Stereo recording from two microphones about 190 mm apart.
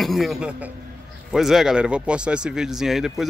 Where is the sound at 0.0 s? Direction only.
Centre (ahead or behind).